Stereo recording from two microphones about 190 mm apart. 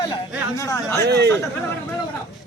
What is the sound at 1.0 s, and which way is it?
Speech, 60° right (ahead or behind).